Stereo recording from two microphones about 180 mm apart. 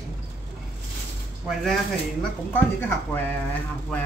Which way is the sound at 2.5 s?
10° left (ahead or behind).